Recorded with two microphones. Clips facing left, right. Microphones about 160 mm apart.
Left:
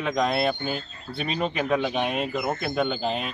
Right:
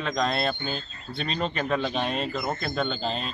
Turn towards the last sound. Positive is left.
turn(degrees=15)  # may be behind; listen again after turning